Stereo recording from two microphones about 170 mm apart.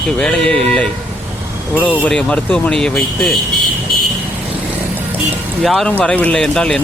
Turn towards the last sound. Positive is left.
turn(degrees=5)  # may be behind; listen again after turning